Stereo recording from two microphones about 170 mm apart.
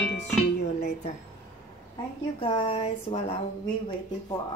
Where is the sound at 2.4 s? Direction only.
30° left (ahead or behind).